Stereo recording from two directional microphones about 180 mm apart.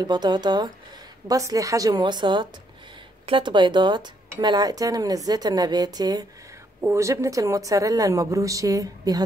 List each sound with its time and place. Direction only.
0.0 s a woman's voice: 25° right (ahead or behind)